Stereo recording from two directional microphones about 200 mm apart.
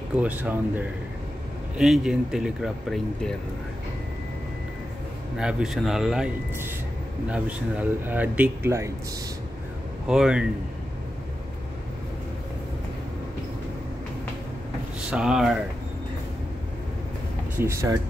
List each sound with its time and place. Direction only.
0.1 s speech: 5° right (ahead or behind)
5.4 s speech: 5° right (ahead or behind)
10.0 s speech: 5° right (ahead or behind)
15.0 s speech: 5° right (ahead or behind)
17.6 s speech: 15° right (ahead or behind)